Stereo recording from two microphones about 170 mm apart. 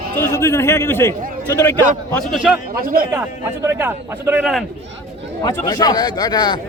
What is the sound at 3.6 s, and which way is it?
Speech, 15° right (ahead or behind).